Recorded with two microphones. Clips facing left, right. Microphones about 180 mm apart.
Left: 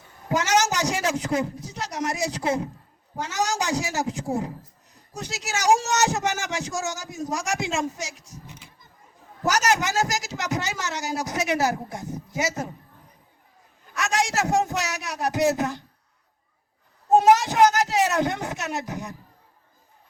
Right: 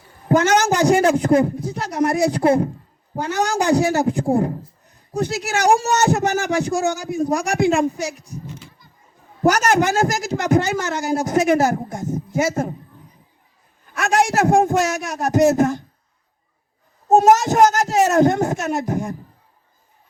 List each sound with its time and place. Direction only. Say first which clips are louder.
0.3 s a man's voice: right 7 dB; 55° right (ahead or behind)
8.5 s a sound: right 7 dB; 20° left (ahead or behind)
9.4 s a woman's voice: right 7 dB; 55° right (ahead or behind)
13.9 s a woman's voice: right 7 dB; 55° right (ahead or behind)
17.1 s a woman's voice: right 4 dB; 45° right (ahead or behind)